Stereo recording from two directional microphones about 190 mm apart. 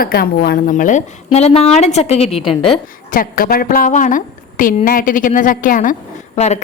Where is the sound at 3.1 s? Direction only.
50° left (ahead or behind).